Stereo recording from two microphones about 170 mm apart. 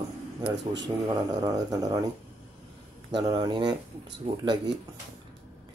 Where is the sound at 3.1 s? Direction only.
25° right (ahead or behind).